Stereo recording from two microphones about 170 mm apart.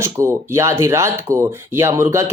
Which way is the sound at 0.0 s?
15° right (ahead or behind).